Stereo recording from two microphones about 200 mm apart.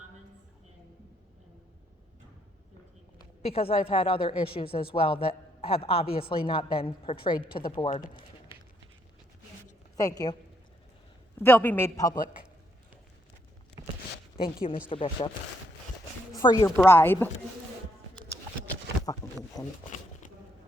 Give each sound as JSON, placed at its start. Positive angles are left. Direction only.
{"t": 3.4, "sound": "speech", "side_deg": 30}
{"t": 7.9, "sound": "speech", "side_deg": 40}
{"t": 10.0, "sound": "speech", "side_deg": 20}
{"t": 11.3, "sound": "speech", "side_deg": 10}
{"t": 14.3, "sound": "speech", "side_deg": 25}
{"t": 16.3, "sound": "speech", "side_deg": 20}